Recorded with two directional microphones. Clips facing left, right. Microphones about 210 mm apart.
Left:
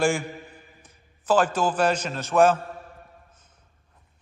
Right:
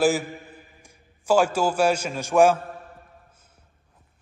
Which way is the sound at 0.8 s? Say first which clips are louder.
Right 1 dB; 10° right (ahead or behind).